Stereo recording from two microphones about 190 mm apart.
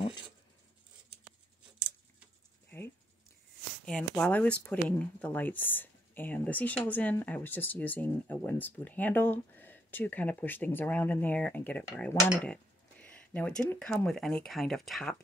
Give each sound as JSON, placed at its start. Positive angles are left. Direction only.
{"t": 3.8, "sound": "speech", "side_deg": 5}